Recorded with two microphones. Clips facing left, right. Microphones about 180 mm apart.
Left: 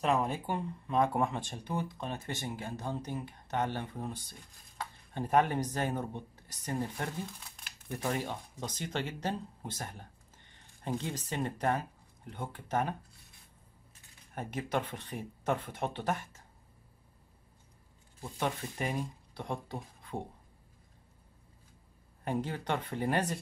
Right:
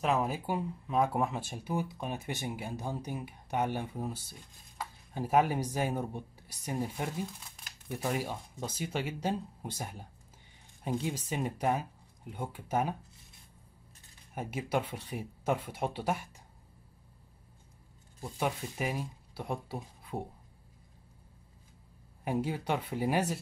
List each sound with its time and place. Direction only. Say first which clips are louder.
0.0 s speech: even; 5° right (ahead or behind)
14.3 s speech: right 1 dB; 10° right (ahead or behind)
18.2 s speech: right 1 dB; 5° right (ahead or behind)
22.2 s speech: right 2 dB; 10° right (ahead or behind)